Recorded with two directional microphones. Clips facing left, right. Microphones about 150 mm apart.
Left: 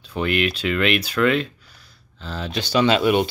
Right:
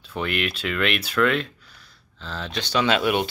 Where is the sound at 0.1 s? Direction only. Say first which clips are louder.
Left 5 dB; centre (ahead or behind).